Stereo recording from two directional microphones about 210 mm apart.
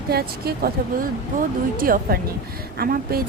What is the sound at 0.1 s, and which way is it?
Speech, 50° right (ahead or behind).